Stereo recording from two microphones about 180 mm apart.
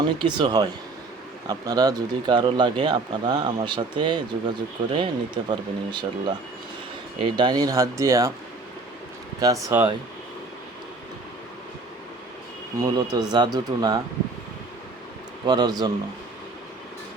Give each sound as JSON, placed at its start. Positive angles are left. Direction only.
{"t": 0.0, "sound": "speech", "side_deg": -25}
{"t": 9.4, "sound": "speech", "side_deg": -20}
{"t": 12.8, "sound": "speech", "side_deg": -20}
{"t": 15.4, "sound": "speech", "side_deg": -20}